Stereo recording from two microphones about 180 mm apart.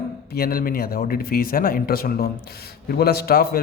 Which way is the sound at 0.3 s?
55° left (ahead or behind).